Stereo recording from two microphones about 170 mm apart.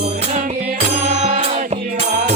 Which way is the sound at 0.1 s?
50° right (ahead or behind).